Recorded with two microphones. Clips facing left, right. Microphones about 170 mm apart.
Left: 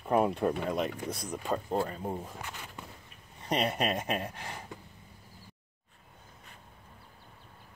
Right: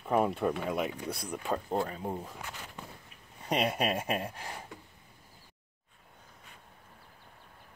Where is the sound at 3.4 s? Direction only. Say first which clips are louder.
Even; 10° right (ahead or behind).